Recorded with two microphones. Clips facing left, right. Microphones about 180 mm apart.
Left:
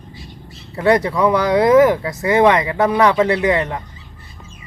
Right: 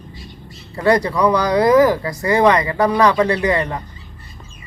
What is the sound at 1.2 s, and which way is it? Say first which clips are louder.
Speech: even; 25° left (ahead or behind).